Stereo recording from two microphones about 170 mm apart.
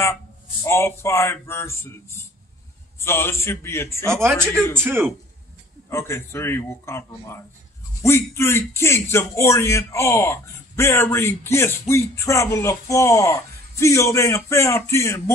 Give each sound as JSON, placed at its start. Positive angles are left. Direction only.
{"t": 0.7, "sound": "a man's voice", "side_deg": 15}
{"t": 4.0, "sound": "speech", "side_deg": -15}
{"t": 4.4, "sound": "a man's voice", "side_deg": 5}
{"t": 4.7, "sound": "speech", "side_deg": -15}
{"t": 5.9, "sound": "a man's voice", "side_deg": 15}